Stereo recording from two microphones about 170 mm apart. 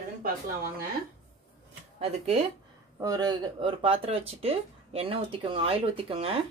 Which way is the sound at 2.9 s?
20° right (ahead or behind).